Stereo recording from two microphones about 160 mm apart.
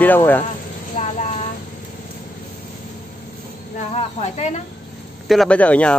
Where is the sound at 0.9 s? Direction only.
50° left (ahead or behind).